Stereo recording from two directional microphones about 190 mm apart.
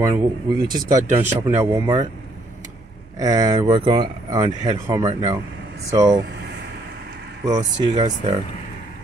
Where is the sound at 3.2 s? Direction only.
20° right (ahead or behind).